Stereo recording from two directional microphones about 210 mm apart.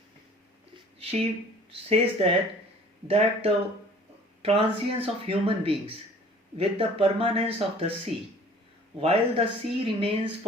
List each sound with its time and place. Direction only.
0.9 s speech: 30° right (ahead or behind)
9.0 s speech: 30° right (ahead or behind)